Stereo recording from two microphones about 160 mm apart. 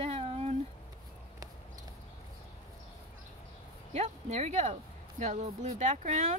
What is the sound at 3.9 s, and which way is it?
Speech, 40° right (ahead or behind).